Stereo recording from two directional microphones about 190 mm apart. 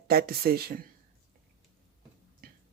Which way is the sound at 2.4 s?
50° right (ahead or behind).